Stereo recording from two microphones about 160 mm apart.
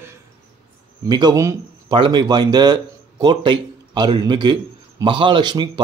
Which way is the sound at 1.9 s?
30° right (ahead or behind).